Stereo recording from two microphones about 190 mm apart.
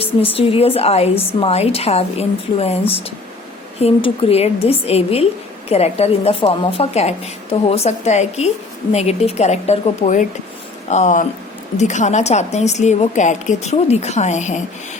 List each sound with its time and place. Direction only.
0.0 s a woman's voice: 30° left (ahead or behind)